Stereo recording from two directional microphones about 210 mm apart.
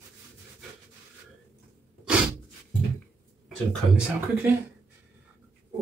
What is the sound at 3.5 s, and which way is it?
Speech, 5° right (ahead or behind).